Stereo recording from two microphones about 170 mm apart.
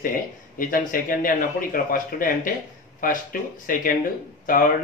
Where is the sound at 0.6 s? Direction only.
50° left (ahead or behind).